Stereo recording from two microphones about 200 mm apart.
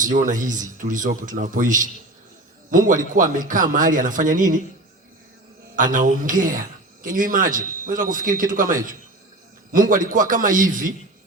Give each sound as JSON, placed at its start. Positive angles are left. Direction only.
{"t": 0.2, "sound": "a man's voice", "side_deg": -40}
{"t": 5.7, "sound": "a man's voice", "side_deg": -40}